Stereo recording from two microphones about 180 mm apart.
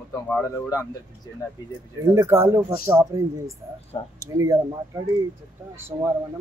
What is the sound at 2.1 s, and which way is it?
Speech, 15° right (ahead or behind).